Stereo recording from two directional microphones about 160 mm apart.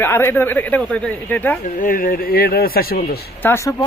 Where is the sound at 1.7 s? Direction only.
60° left (ahead or behind).